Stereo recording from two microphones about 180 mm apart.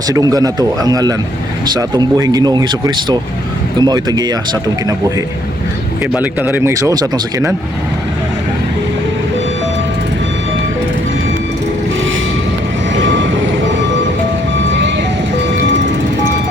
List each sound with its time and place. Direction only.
0.1 s speech: 20° right (ahead or behind)
6.1 s speech: 10° right (ahead or behind)
13.0 s vehicle: 90° right